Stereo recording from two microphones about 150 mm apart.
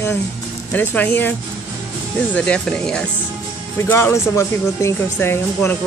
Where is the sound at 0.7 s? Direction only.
10° left (ahead or behind).